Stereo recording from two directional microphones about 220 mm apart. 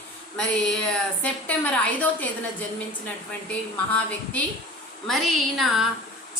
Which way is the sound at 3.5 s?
5° left (ahead or behind).